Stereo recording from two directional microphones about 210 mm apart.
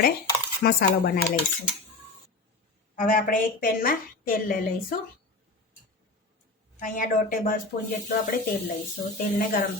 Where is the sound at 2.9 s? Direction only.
40° left (ahead or behind).